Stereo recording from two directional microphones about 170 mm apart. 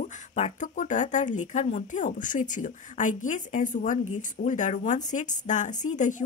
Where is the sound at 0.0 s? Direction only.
45° left (ahead or behind).